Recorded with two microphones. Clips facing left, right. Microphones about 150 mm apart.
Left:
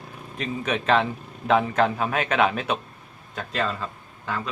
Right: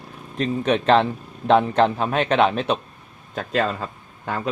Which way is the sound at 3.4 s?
45° right (ahead or behind).